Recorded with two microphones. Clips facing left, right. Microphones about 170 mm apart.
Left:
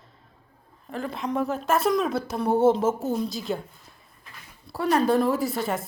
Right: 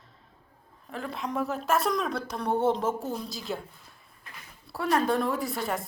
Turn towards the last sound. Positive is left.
turn(degrees=0)  # may be behind; listen again after turning